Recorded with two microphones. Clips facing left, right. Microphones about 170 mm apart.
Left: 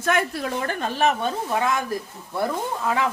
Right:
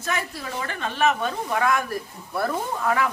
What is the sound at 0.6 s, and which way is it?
Speech, 40° left (ahead or behind).